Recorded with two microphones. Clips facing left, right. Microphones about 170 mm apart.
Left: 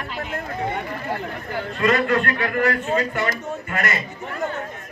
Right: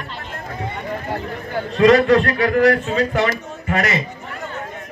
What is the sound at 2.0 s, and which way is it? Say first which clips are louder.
A man's voice: right 6 dB; 85° right.